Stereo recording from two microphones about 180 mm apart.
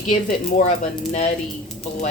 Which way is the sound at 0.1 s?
45° left (ahead or behind).